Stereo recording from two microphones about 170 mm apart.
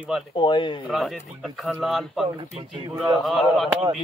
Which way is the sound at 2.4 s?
35° right (ahead or behind).